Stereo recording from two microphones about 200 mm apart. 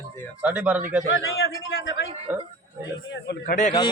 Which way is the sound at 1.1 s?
80° left.